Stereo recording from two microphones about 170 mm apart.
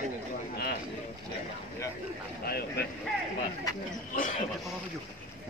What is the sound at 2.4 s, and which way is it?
Speech, 65° left (ahead or behind).